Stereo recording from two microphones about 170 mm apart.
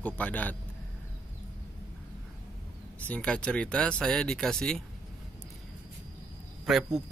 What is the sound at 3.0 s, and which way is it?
Speech, 5° left (ahead or behind).